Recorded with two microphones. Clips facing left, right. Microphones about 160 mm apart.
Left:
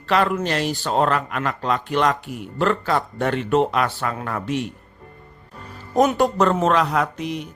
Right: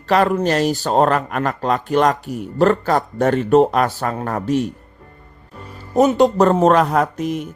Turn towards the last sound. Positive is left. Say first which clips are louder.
# right 4 dB
turn(degrees=-45)  # may be behind; listen again after turning